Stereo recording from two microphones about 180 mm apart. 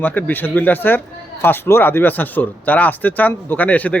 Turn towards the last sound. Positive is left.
turn(degrees=10)  # may be behind; listen again after turning